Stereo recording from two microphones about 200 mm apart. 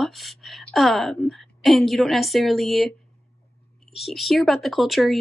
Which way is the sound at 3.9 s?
Centre (ahead or behind).